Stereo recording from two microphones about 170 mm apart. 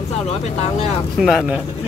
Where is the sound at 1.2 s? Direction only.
5° right (ahead or behind).